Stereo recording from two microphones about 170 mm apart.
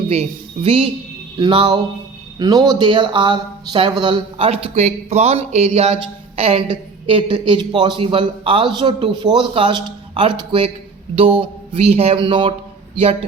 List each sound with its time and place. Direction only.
0.1 s speech: 35° right (ahead or behind)